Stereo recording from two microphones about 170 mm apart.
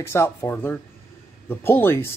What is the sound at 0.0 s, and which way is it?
Speech, 15° left (ahead or behind).